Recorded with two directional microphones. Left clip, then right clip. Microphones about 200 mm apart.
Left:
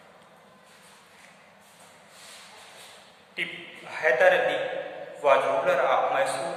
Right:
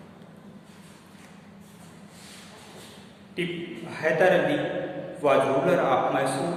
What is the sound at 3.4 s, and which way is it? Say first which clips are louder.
A man's voice: right 1 dB; 5° left (ahead or behind).